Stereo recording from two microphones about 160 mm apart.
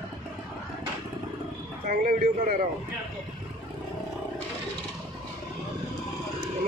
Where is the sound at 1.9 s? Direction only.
65° right (ahead or behind).